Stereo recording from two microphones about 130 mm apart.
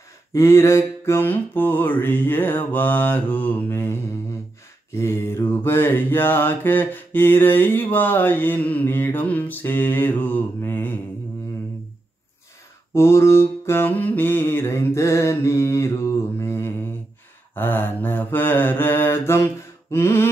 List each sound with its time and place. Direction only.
0.3 s mantra: 20° left (ahead or behind)
12.9 s mantra: 20° left (ahead or behind)